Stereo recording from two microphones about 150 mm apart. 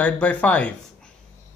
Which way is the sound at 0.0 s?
10° left (ahead or behind).